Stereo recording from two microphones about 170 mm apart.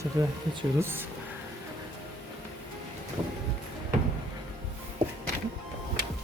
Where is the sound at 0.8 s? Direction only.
10° right (ahead or behind).